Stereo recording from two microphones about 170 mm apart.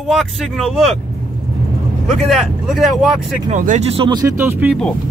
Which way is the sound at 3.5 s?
45° right (ahead or behind).